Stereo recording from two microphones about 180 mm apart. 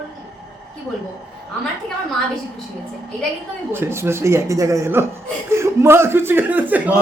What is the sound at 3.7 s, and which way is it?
A man's voice, 15° right (ahead or behind).